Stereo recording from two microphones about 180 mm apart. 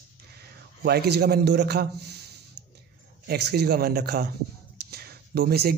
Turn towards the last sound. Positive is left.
turn(degrees=-60)  # may be behind; listen again after turning